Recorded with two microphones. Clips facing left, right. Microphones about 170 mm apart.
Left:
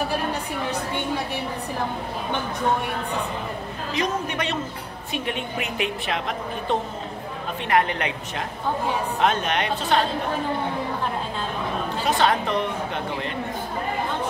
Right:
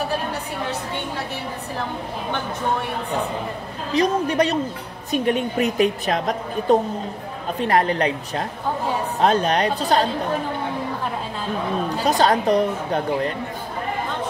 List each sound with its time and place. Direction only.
3.9 s a woman's voice: 35° right (ahead or behind)
12.0 s a woman's voice: 40° right (ahead or behind)